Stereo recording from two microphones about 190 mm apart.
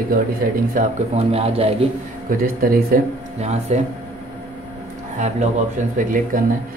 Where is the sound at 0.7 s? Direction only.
35° right (ahead or behind).